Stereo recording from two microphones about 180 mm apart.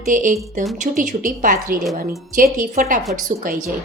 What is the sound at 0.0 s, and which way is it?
A woman's voice, 45° right (ahead or behind).